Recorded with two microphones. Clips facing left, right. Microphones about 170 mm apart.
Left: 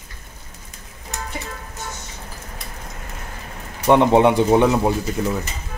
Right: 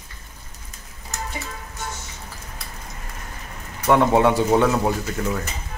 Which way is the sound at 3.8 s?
20° left (ahead or behind).